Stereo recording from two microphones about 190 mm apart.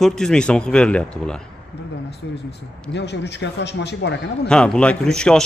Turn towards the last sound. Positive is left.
turn(degrees=5)  # may be behind; listen again after turning